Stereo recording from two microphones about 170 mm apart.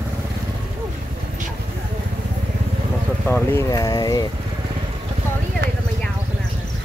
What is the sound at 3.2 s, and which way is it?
Speech, 15° left (ahead or behind).